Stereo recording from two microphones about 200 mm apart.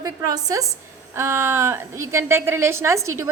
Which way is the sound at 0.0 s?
15° right (ahead or behind).